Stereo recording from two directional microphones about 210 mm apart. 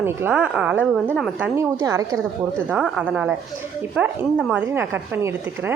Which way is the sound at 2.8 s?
5° right (ahead or behind).